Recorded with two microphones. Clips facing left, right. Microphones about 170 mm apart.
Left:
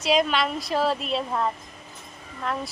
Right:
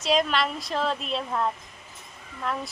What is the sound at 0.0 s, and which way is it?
A woman's voice, centre (ahead or behind).